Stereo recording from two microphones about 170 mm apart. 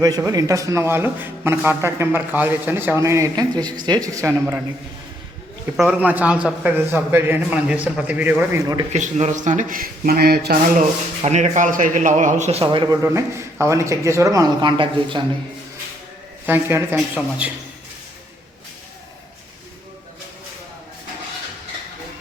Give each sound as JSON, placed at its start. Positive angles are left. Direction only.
{"t": 0.0, "sound": "speech", "side_deg": -20}
{"t": 5.7, "sound": "speech", "side_deg": -5}
{"t": 8.9, "sound": "speech", "side_deg": -40}
{"t": 11.2, "sound": "speech", "side_deg": -40}
{"t": 16.5, "sound": "speech", "side_deg": -15}